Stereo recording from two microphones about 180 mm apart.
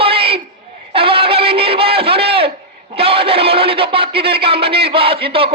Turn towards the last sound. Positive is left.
turn(degrees=-30)  # may be behind; listen again after turning